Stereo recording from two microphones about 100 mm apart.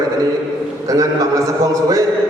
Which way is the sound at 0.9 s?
35° right (ahead or behind).